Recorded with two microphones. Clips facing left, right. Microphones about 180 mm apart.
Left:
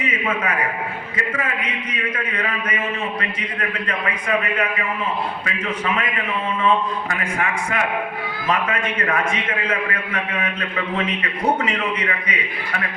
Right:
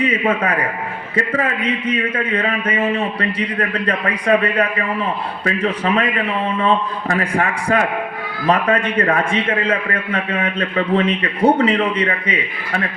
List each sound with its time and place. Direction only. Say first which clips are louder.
0.0 s a man's voice: right 6 dB; 35° right (ahead or behind)